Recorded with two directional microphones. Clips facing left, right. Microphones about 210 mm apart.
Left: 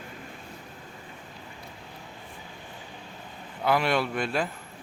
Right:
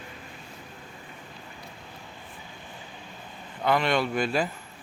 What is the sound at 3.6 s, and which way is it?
Speech, 5° left (ahead or behind).